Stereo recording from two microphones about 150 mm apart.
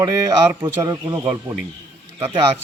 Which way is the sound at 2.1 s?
40° right (ahead or behind).